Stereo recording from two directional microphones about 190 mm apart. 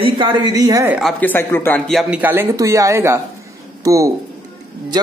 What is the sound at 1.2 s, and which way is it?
Speech, 10° left (ahead or behind).